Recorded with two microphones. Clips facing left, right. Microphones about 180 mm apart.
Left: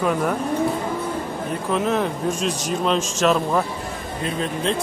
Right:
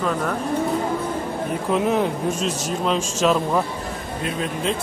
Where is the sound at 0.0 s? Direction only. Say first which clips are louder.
Left 2 dB; 10° left (ahead or behind).